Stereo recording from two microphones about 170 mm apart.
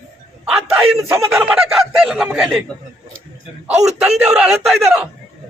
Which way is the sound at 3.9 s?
5° right (ahead or behind).